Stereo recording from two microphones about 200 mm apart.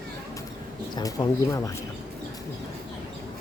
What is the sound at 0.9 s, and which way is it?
Speech, 20° left (ahead or behind).